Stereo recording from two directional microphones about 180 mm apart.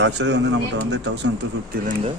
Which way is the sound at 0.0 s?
80° right.